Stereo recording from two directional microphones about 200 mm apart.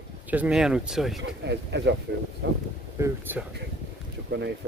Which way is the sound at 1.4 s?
60° right (ahead or behind).